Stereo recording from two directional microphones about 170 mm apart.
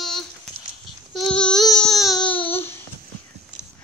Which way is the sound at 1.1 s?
5° left (ahead or behind).